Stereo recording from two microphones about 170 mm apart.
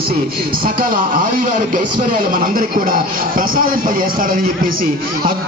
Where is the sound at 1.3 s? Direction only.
55° right (ahead or behind).